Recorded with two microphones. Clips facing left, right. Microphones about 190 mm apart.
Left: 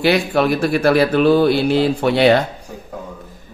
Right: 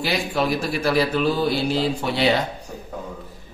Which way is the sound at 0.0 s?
65° left (ahead or behind).